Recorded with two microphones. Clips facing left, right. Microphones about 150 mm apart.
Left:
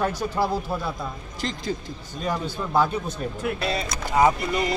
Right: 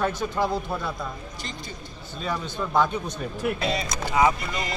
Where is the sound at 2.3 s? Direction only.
5° left (ahead or behind).